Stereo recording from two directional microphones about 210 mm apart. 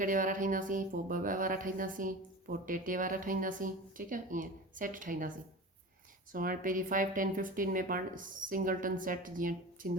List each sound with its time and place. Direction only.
0.0 s speech: 40° right (ahead or behind)
6.3 s speech: 40° right (ahead or behind)